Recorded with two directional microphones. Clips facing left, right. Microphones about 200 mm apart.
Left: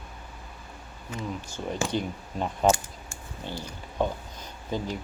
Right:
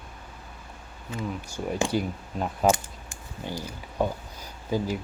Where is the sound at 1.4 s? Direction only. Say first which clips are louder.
Right 4 dB; 10° right (ahead or behind).